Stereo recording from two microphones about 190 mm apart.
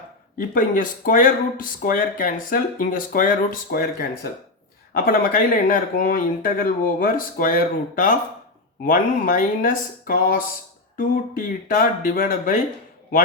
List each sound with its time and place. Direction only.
0.3 s speech: 45° left (ahead or behind)